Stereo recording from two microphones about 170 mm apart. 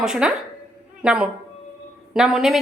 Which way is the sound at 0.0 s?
5° right (ahead or behind).